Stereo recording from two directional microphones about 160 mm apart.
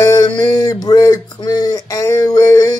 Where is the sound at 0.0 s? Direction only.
25° left (ahead or behind).